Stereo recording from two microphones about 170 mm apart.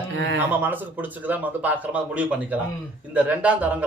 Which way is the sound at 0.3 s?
10° right (ahead or behind).